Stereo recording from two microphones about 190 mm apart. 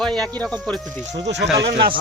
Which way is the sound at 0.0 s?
5° left (ahead or behind).